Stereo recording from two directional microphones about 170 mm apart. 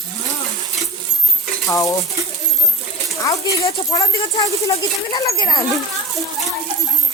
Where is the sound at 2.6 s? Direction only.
Centre (ahead or behind).